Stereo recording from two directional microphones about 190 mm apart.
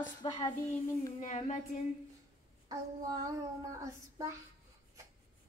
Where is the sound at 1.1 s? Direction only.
35° left (ahead or behind).